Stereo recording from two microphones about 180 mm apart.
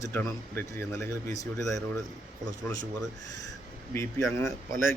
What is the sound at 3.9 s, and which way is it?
Speech, 15° left (ahead or behind).